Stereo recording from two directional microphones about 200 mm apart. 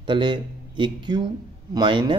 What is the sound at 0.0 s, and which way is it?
A man's voice, 25° right (ahead or behind).